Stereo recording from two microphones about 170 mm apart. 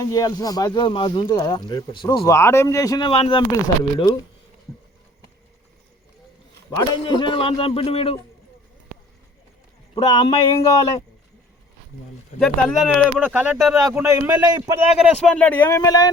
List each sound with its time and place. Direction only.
0.0 s speech: 20° left (ahead or behind)
3.1 s a man's voice: 35° left (ahead or behind)
6.7 s a man's voice: 25° left (ahead or behind)
10.1 s speech: 25° left (ahead or behind)
12.4 s speech: centre (ahead or behind)
13.2 s speech: 10° right (ahead or behind)
13.7 s speech: 20° right (ahead or behind)
15.2 s speech: 5° left (ahead or behind)